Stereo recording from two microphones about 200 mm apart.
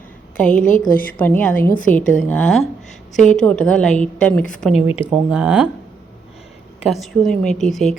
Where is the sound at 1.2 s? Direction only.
10° left (ahead or behind).